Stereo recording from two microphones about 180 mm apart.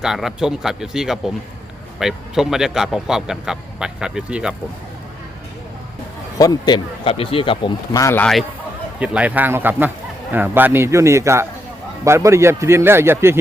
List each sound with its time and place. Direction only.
0.0 s speech: centre (ahead or behind)
6.4 s speech: 20° left (ahead or behind)
8.2 s a man's voice: centre (ahead or behind)